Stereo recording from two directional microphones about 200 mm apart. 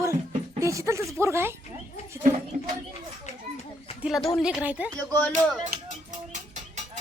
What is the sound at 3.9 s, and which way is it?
Speech, centre (ahead or behind).